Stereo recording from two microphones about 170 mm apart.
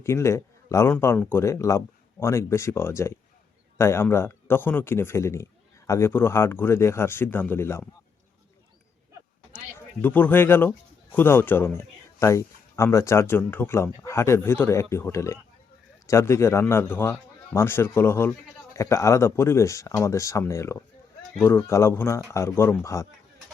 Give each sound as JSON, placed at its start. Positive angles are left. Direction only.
{"t": 0.0, "sound": "a man's voice", "side_deg": 15}
{"t": 9.5, "sound": "a man's voice", "side_deg": 10}